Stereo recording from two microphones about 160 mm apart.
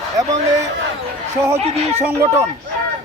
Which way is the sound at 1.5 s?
40° right (ahead or behind).